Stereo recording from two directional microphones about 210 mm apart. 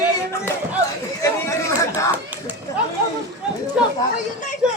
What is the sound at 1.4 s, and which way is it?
Speech, 15° left (ahead or behind).